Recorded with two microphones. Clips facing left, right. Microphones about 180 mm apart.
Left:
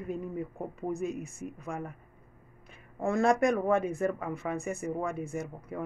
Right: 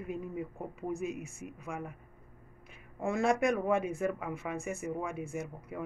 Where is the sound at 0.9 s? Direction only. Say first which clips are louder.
Left 3 dB; 5° right (ahead or behind).